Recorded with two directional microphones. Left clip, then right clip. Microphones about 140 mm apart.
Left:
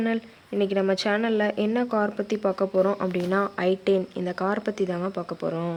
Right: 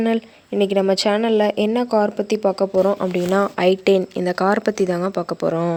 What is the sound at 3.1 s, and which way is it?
Speech, 40° right (ahead or behind).